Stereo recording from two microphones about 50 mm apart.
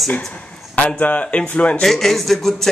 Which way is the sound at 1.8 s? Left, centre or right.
Centre.